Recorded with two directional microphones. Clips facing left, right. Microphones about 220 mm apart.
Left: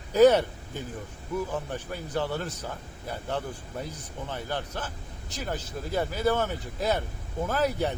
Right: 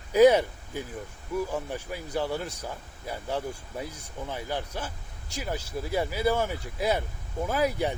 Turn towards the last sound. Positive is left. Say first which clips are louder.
# even
turn(degrees=-10)  # may be behind; listen again after turning